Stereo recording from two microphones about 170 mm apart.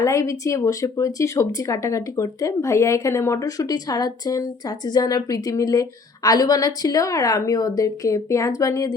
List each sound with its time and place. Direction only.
0.0 s speech: 20° left (ahead or behind)